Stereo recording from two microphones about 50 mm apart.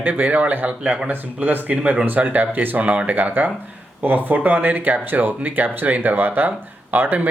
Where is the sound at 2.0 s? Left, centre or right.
Right.